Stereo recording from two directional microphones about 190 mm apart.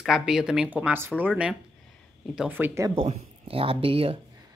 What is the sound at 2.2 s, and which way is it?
Speech, 5° right (ahead or behind).